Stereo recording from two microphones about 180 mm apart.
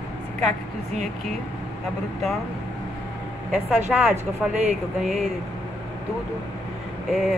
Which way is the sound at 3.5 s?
5° right (ahead or behind).